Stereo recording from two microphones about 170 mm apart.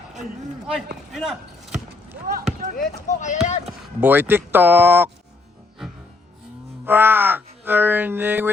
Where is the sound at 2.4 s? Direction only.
45° right (ahead or behind).